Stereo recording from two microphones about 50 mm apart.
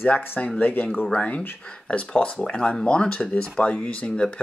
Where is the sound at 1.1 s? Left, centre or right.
Left.